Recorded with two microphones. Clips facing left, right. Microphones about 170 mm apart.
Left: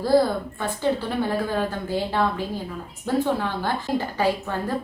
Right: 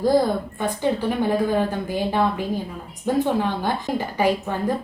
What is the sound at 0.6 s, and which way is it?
A woman's voice, 15° right (ahead or behind).